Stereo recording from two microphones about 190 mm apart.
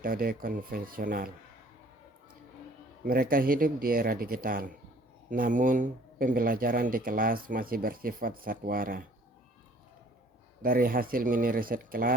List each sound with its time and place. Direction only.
0.0 s speech: 50° right (ahead or behind)
3.0 s speech: 50° right (ahead or behind)
10.6 s speech: 50° right (ahead or behind)